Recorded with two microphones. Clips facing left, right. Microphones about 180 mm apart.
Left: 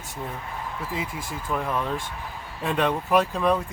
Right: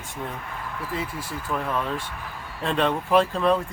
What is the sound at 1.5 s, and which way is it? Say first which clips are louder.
Speech: left 1 dB; 15° left (ahead or behind).